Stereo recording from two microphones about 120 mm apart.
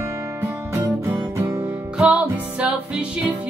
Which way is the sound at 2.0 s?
10° right (ahead or behind).